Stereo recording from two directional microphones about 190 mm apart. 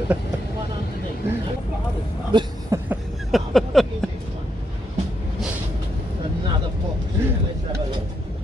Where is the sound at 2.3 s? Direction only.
25° right (ahead or behind).